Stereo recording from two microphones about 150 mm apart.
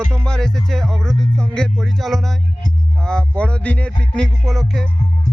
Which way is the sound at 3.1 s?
5° left (ahead or behind).